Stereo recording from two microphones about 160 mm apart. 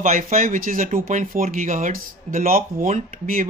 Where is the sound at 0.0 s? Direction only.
55° right (ahead or behind).